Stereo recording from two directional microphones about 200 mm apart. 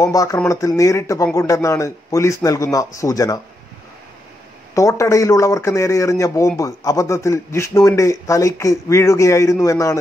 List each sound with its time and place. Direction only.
0.0 s speech: 15° left (ahead or behind)
4.7 s speech: 15° left (ahead or behind)